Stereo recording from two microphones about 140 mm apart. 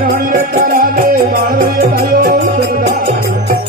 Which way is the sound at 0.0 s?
90° right.